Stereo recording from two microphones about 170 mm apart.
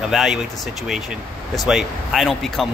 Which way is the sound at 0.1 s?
Centre (ahead or behind).